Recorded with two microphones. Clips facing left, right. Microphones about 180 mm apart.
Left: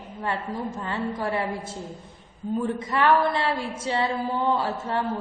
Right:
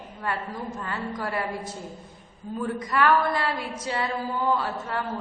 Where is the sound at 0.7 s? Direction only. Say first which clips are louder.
Left 3 dB; 25° left (ahead or behind).